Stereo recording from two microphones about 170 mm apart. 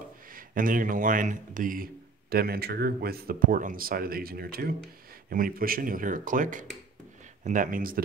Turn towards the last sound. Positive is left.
turn(degrees=-55)  # may be behind; listen again after turning